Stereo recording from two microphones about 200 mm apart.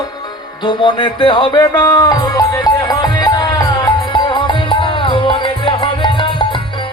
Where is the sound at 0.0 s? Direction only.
20° left (ahead or behind).